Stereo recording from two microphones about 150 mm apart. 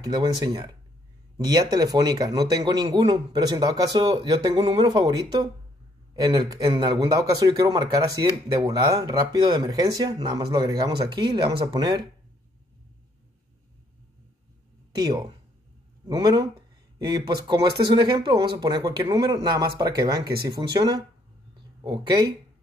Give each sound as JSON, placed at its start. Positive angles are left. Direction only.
{"t": 0.0, "sound": "speech", "side_deg": -30}
{"t": 4.6, "sound": "speech", "side_deg": -40}
{"t": 4.8, "sound": "speech", "side_deg": -30}
{"t": 15.0, "sound": "speech", "side_deg": -30}
{"t": 17.5, "sound": "speech", "side_deg": -30}